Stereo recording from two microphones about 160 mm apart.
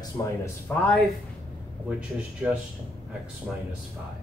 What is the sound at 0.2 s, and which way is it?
Speech, 25° left (ahead or behind).